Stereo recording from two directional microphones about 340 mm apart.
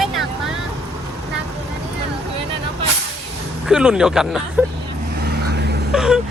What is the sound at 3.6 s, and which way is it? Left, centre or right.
Speech, centre.